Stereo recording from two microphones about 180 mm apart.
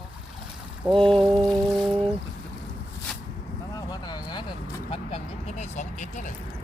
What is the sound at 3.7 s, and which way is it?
Vehicle, 20° left (ahead or behind).